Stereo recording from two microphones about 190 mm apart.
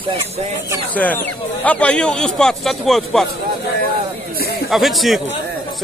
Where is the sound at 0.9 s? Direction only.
10° left (ahead or behind).